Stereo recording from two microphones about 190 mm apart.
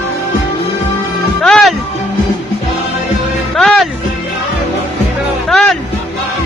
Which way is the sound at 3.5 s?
Centre (ahead or behind).